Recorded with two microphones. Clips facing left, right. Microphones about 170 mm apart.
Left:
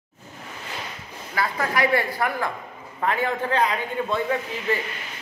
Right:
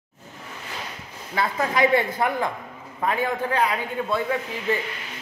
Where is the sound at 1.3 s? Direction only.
20° right (ahead or behind).